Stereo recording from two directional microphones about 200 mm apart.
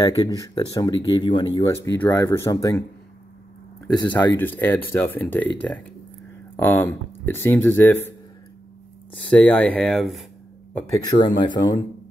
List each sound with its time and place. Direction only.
0.6 s speech: 20° left (ahead or behind)
2.0 s speech: 15° left (ahead or behind)
3.9 s speech: 20° left (ahead or behind)
4.4 s speech: 10° left (ahead or behind)
6.5 s speech: 10° left (ahead or behind)
9.3 s speech: 5° left (ahead or behind)
11.1 s speech: 20° left (ahead or behind)